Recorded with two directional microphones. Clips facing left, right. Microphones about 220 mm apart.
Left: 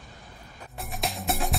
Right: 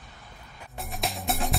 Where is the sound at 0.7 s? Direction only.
Centre (ahead or behind).